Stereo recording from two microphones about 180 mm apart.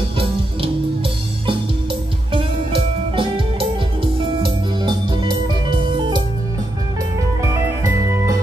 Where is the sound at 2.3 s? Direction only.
30° right (ahead or behind).